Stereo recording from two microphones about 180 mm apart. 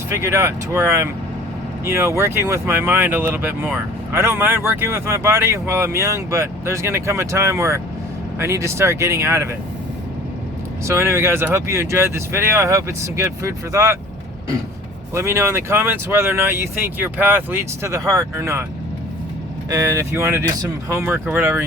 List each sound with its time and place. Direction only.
0.3 s speech: 15° right (ahead or behind)
10.8 s speech: 15° right (ahead or behind)
15.1 s speech: 15° right (ahead or behind)
19.7 s speech: 20° right (ahead or behind)